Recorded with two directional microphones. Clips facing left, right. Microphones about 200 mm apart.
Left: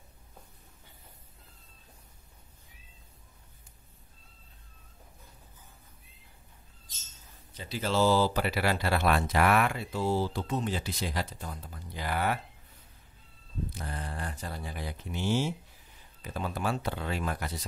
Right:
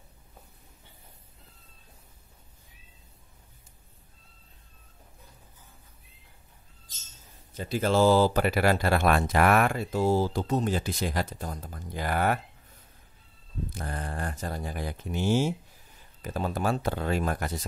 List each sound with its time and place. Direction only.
7.5 s speech: 50° right (ahead or behind)
13.7 s speech: 50° right (ahead or behind)